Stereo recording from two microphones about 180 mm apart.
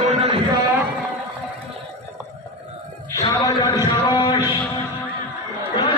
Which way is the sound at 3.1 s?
20° left (ahead or behind).